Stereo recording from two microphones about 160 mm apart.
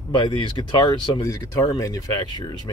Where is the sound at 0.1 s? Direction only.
30° left (ahead or behind).